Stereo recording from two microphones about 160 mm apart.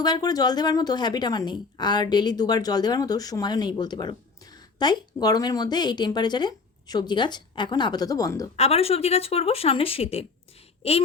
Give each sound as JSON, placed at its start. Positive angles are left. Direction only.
{"t": 0.0, "sound": "a woman's voice", "side_deg": 25}
{"t": 8.5, "sound": "speech", "side_deg": 40}